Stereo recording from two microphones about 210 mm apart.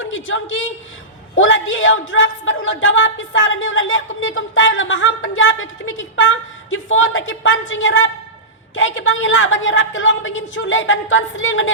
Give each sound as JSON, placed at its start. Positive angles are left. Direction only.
{"t": 0.0, "sound": "a woman's voice", "side_deg": 65}